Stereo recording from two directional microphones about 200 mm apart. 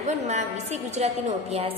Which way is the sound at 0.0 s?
35° right (ahead or behind).